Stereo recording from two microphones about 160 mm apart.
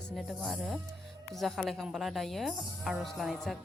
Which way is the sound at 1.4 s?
Centre (ahead or behind).